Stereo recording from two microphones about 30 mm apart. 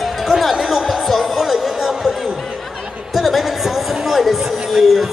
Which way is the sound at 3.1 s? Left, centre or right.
Centre.